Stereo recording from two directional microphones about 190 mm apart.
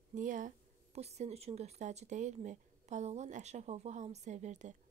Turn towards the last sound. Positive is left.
turn(degrees=-40)  # may be behind; listen again after turning